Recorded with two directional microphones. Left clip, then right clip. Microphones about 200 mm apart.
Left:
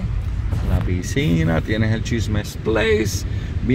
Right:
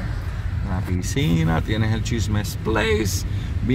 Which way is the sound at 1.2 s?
5° left (ahead or behind).